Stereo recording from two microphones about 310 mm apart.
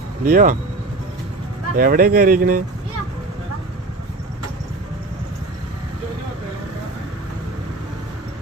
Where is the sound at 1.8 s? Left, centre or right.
Right.